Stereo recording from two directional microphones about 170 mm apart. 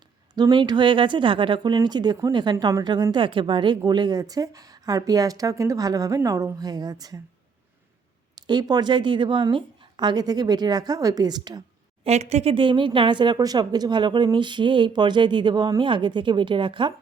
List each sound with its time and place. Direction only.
0.3 s speech: 25° right (ahead or behind)
8.4 s speech: 25° right (ahead or behind)
12.0 s speech: 40° right (ahead or behind)